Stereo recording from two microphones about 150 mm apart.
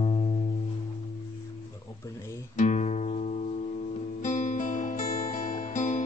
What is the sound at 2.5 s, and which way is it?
Music, 50° left (ahead or behind).